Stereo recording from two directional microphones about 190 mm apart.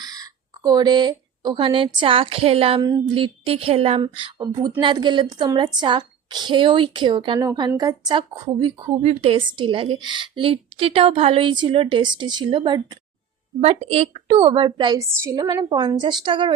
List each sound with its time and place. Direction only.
0.0 s a woman's voice: 20° right (ahead or behind)